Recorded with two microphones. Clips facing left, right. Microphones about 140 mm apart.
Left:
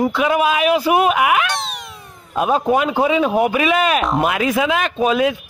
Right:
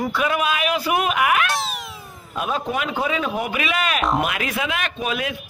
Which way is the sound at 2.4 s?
30° left (ahead or behind).